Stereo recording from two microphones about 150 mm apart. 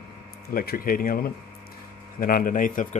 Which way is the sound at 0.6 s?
75° left (ahead or behind).